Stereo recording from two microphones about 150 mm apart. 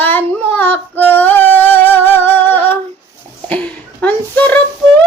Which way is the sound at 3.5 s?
10° left (ahead or behind).